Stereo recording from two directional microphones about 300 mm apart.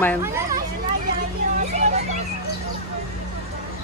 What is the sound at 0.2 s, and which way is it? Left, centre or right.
Speech, centre.